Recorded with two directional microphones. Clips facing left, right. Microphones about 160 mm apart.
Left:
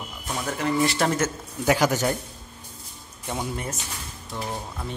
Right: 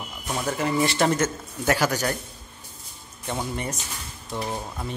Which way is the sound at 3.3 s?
5° left (ahead or behind).